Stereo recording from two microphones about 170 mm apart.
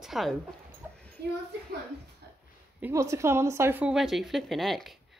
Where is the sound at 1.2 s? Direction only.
75° right (ahead or behind).